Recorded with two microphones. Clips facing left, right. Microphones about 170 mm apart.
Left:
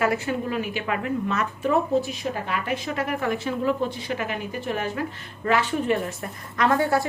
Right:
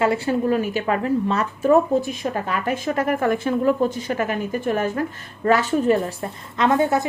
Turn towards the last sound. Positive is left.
turn(degrees=-20)  # may be behind; listen again after turning